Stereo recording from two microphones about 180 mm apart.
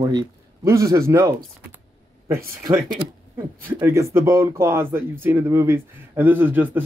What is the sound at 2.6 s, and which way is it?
Speech, 25° right (ahead or behind).